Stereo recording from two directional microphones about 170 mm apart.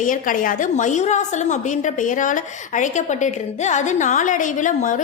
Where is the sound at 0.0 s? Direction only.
50° left (ahead or behind).